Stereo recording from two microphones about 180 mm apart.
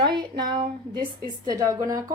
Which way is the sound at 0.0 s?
25° right (ahead or behind).